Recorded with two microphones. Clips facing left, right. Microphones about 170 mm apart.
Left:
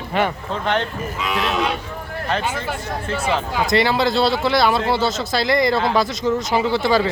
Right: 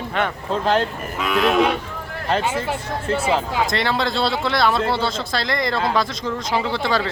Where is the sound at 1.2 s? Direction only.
55° right (ahead or behind).